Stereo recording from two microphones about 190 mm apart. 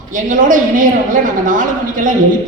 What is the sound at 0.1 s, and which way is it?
A woman's voice, 45° right (ahead or behind).